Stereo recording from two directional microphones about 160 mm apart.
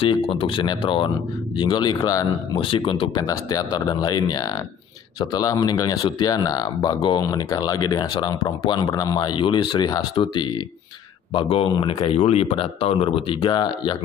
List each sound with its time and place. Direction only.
0.0 s speech: 35° left (ahead or behind)